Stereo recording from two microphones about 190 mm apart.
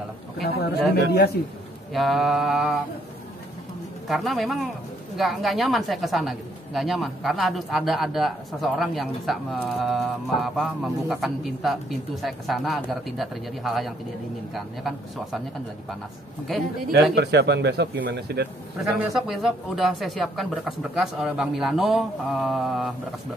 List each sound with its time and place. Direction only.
0.4 s a man's voice: 55° left (ahead or behind)
2.0 s a woman's voice: centre (ahead or behind)
4.1 s a woman's voice: centre (ahead or behind)
16.5 s a woman's voice: centre (ahead or behind)
16.9 s speech: 60° right (ahead or behind)
18.8 s a woman's voice: centre (ahead or behind)